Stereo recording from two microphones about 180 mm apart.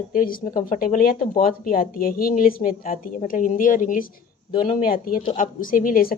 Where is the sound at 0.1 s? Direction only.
50° left (ahead or behind).